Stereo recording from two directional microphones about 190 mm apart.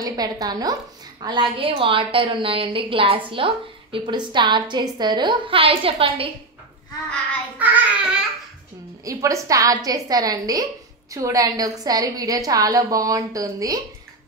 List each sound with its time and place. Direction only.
0.0 s a woman's voice: 20° right (ahead or behind)
7.5 s a woman's voice: 10° right (ahead or behind)